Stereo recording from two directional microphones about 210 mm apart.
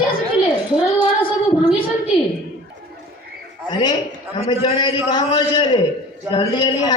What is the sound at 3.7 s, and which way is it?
A woman's voice, 20° left (ahead or behind).